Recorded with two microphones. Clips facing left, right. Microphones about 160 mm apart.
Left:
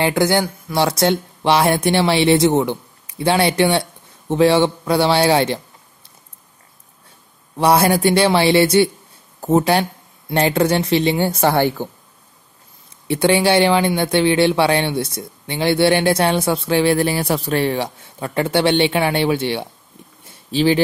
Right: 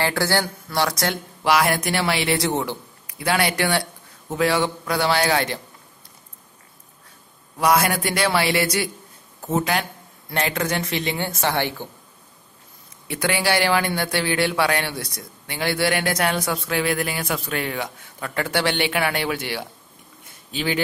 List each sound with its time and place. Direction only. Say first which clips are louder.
0.0 s speech: left 5 dB; 20° left (ahead or behind)
7.5 s speech: left 5 dB; 30° left (ahead or behind)
13.1 s speech: left 8 dB; 25° left (ahead or behind)